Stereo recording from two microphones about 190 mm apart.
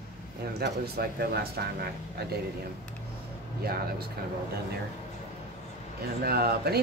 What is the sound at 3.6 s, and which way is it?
Speech, 55° right (ahead or behind).